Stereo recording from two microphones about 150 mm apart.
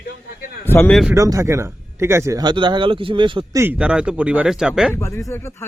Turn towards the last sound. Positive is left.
turn(degrees=15)  # may be behind; listen again after turning